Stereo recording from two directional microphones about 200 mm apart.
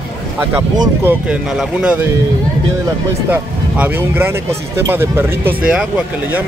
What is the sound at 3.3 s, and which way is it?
Speech, 10° right (ahead or behind).